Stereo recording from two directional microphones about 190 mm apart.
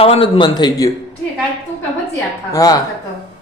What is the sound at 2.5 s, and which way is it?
Speech, 20° left (ahead or behind).